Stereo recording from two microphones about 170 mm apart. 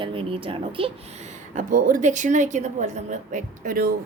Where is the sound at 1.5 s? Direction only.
50° right (ahead or behind).